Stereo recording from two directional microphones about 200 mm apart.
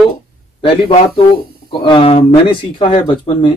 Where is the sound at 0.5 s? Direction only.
30° left (ahead or behind).